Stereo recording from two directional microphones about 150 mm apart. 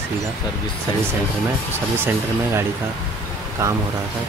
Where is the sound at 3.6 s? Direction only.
20° right (ahead or behind).